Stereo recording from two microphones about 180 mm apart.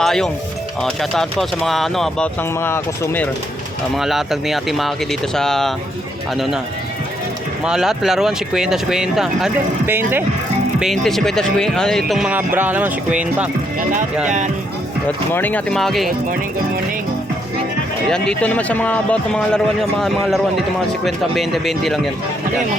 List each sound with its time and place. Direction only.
0.0 s speech: centre (ahead or behind)
3.9 s speech: centre (ahead or behind)
7.6 s speech: 5° right (ahead or behind)
10.8 s speech: centre (ahead or behind)
12.5 s music: 10° right (ahead or behind)
14.3 s speech: 45° right (ahead or behind)
15.0 s speech: 10° left (ahead or behind)
18.1 s speech: 5° left (ahead or behind)